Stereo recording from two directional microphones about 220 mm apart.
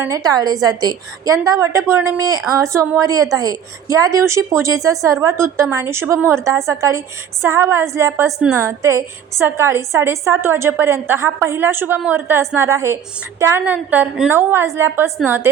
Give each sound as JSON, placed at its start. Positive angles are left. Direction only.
{"t": 0.0, "sound": "a woman's voice", "side_deg": -15}